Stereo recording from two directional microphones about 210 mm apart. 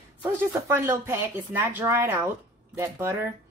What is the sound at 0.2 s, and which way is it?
Speech, 10° right (ahead or behind).